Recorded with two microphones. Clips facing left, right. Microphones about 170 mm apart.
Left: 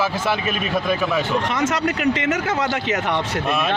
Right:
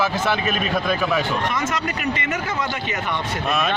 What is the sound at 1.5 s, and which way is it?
Speech, 85° left.